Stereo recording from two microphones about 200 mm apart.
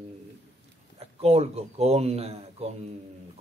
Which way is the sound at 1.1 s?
30° right (ahead or behind).